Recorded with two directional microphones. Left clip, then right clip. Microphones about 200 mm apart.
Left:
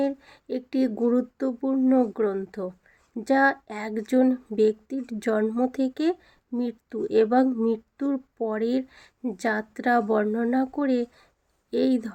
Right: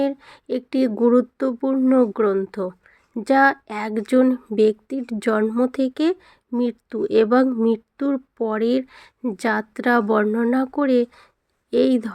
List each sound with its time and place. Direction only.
0.0 s speech: 30° right (ahead or behind)